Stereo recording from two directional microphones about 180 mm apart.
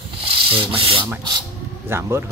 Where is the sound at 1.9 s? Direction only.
15° right (ahead or behind).